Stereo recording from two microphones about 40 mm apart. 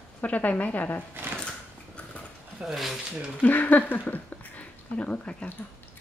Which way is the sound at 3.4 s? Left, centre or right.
Left.